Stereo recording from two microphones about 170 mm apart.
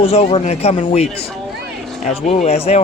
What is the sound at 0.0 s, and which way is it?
Speech, 35° left (ahead or behind).